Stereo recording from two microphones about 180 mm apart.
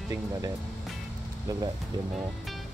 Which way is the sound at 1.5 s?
20° right (ahead or behind).